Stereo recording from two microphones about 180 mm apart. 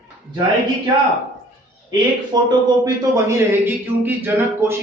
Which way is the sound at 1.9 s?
25° right (ahead or behind).